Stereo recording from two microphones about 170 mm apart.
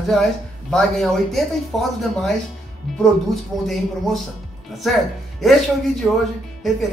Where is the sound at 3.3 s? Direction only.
Centre (ahead or behind).